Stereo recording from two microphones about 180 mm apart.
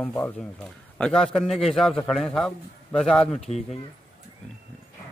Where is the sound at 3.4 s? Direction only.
35° left (ahead or behind).